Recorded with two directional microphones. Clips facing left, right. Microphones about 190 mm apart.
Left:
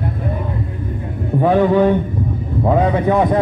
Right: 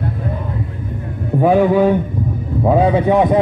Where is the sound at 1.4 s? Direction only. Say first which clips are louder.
Right 1 dB; 10° right (ahead or behind).